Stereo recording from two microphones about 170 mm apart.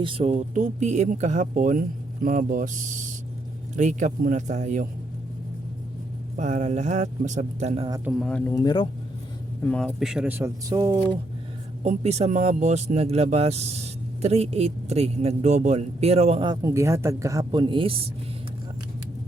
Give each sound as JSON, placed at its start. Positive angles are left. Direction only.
{"t": 0.0, "sound": "speech", "side_deg": -35}
{"t": 6.3, "sound": "speech", "side_deg": -45}
{"t": 8.2, "sound": "speech", "side_deg": 5}
{"t": 8.5, "sound": "speech", "side_deg": 25}
{"t": 9.6, "sound": "speech", "side_deg": 5}
{"t": 11.8, "sound": "speech", "side_deg": -40}